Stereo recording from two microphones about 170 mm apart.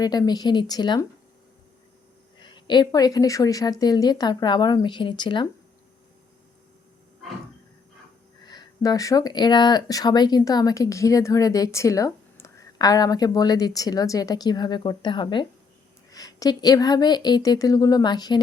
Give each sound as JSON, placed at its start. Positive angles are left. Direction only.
{"t": 0.0, "sound": "speech", "side_deg": 25}
{"t": 2.4, "sound": "speech", "side_deg": 25}
{"t": 8.4, "sound": "speech", "side_deg": 25}